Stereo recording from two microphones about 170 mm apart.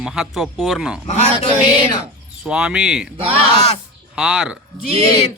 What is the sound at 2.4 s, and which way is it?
Speech, 5° right (ahead or behind).